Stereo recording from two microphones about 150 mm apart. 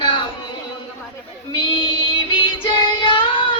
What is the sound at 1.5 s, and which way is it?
Child singing, 35° left (ahead or behind).